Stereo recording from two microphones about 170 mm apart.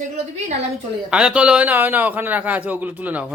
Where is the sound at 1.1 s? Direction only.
5° right (ahead or behind).